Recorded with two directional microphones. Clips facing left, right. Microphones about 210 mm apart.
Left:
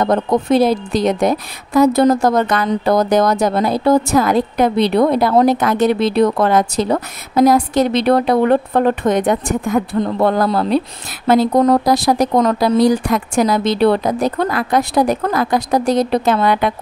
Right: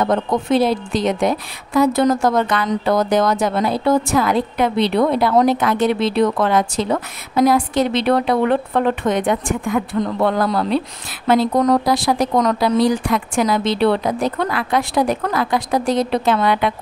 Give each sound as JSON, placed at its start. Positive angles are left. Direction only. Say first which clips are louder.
{"t": 0.0, "sound": "speech", "louder": "left 3 dB", "side_deg": 40}